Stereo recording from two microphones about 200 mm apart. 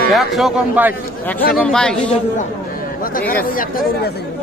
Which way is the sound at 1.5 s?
5° left (ahead or behind).